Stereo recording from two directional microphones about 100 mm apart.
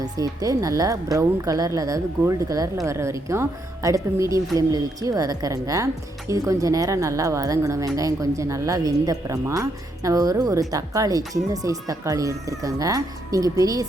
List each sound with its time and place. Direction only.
0.0 s speech: 35° right (ahead or behind)